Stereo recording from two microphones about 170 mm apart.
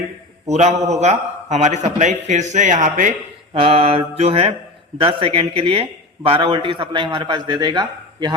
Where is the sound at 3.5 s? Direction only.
35° right (ahead or behind).